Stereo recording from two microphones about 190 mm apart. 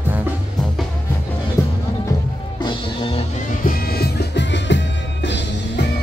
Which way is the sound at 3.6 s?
50° left (ahead or behind).